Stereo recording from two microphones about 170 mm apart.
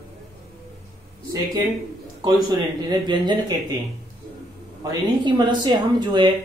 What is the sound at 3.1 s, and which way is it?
Speech, 25° right (ahead or behind).